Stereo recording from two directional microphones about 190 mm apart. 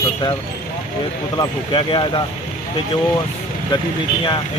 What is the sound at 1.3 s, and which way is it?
Speech, 25° left (ahead or behind).